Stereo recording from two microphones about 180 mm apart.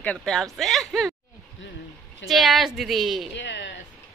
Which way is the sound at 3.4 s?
75° left (ahead or behind).